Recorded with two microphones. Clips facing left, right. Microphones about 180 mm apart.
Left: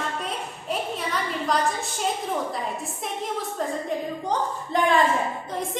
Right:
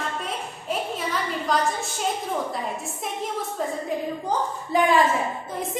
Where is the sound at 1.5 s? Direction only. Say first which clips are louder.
Right 1 dB; centre (ahead or behind).